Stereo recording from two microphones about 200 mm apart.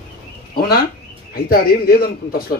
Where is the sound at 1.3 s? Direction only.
50° left (ahead or behind).